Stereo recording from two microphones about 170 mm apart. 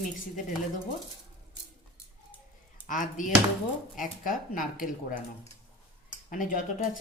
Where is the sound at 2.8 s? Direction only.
50° left (ahead or behind).